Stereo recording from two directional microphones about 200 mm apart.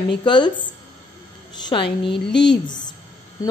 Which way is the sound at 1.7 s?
25° left (ahead or behind).